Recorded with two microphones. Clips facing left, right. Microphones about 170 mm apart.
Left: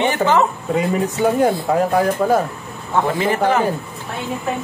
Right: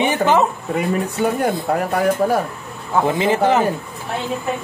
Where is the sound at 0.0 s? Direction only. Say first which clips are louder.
Even; 15° right (ahead or behind).